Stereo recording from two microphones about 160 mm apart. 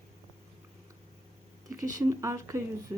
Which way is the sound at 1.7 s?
20° right (ahead or behind).